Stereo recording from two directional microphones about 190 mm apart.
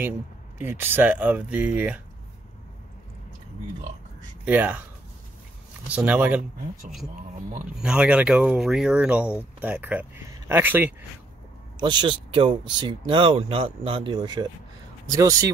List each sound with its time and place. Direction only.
0.6 s speech: 10° right (ahead or behind)
4.5 s speech: 10° right (ahead or behind)
5.9 s speech: 5° right (ahead or behind)
7.7 s speech: 5° right (ahead or behind)
11.7 s speech: 25° right (ahead or behind)